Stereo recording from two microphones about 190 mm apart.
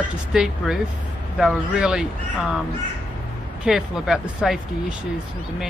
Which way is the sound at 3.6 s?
5° right (ahead or behind).